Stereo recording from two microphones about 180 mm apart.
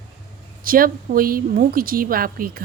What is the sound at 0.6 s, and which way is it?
A woman's voice, 50° right (ahead or behind).